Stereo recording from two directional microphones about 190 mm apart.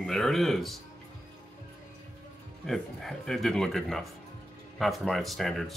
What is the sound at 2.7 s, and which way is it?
A man's voice, centre (ahead or behind).